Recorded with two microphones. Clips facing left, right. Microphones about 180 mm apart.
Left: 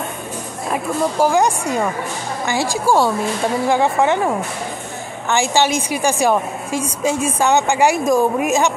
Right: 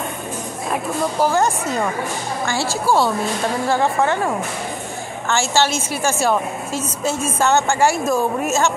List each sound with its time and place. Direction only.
1.2 s a woman's voice: 15° left (ahead or behind)
5.3 s a woman's voice: 15° left (ahead or behind)